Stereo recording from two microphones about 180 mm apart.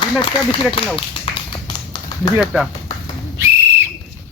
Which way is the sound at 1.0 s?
25° left (ahead or behind).